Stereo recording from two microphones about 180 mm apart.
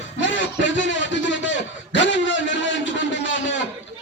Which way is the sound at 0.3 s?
90° left.